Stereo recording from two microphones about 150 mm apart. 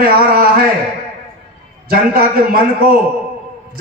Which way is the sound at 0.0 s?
80° right.